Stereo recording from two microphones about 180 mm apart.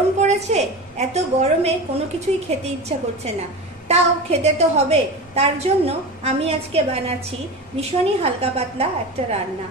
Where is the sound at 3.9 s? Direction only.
35° right (ahead or behind).